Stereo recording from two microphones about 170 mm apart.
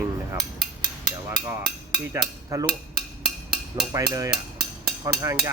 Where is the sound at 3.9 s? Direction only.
20° right (ahead or behind).